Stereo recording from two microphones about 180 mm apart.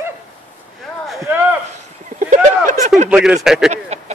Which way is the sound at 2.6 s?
40° right (ahead or behind).